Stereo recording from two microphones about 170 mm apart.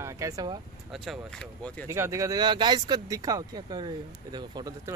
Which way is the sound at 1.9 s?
15° right (ahead or behind).